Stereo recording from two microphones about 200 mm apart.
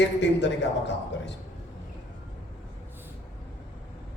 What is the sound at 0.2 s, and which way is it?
A man's voice, 65° left (ahead or behind).